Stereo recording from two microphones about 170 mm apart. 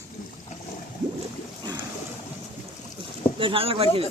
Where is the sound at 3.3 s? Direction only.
30° right (ahead or behind).